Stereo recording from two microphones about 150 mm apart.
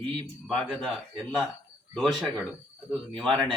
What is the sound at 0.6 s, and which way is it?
Speech, 5° left (ahead or behind).